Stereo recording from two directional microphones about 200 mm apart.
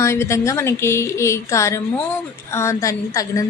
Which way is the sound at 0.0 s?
15° left (ahead or behind).